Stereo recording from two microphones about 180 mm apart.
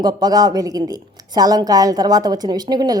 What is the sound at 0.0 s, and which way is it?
A woman's voice, 20° right (ahead or behind).